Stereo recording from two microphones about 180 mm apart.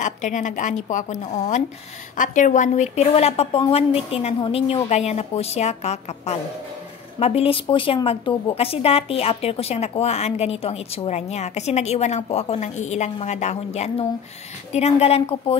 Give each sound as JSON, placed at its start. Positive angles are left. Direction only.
{"t": 0.0, "sound": "a woman's voice", "side_deg": 45}